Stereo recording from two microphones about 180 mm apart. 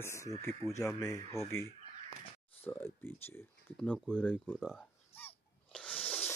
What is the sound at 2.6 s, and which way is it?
Speech, 15° left (ahead or behind).